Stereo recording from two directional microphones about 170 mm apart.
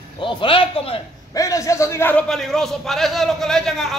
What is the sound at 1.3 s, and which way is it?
A man's voice, 20° left (ahead or behind).